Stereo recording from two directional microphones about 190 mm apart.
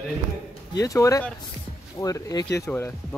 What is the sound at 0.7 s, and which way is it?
Speech, 15° left (ahead or behind).